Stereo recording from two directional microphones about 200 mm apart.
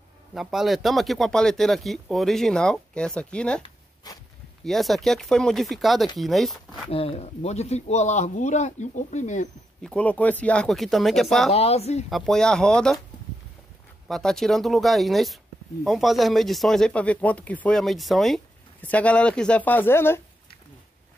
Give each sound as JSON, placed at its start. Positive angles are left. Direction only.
{"t": 0.3, "sound": "speech", "side_deg": 0}
{"t": 3.6, "sound": "zipper", "side_deg": 20}
{"t": 4.6, "sound": "speech", "side_deg": 0}
{"t": 6.9, "sound": "speech", "side_deg": 30}
{"t": 9.8, "sound": "speech", "side_deg": 5}
{"t": 11.5, "sound": "speech", "side_deg": 30}
{"t": 12.1, "sound": "speech", "side_deg": 0}
{"t": 14.0, "sound": "speech", "side_deg": 0}